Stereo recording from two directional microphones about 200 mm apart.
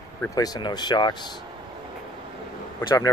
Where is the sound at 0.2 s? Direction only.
15° left (ahead or behind).